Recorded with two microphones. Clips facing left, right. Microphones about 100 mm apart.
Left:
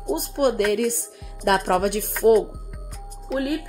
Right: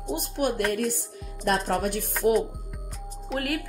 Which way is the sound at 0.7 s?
65° left (ahead or behind).